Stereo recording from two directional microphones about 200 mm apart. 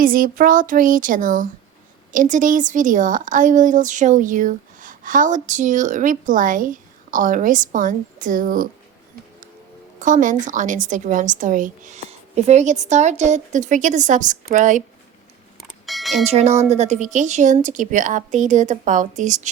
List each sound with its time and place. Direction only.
0.0 s speech: 45° right (ahead or behind)
10.0 s speech: 40° right (ahead or behind)
15.9 s a sound: centre (ahead or behind)
16.2 s speech: 30° right (ahead or behind)